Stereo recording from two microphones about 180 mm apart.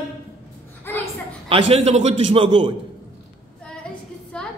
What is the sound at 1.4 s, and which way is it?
A man's voice, 30° right (ahead or behind).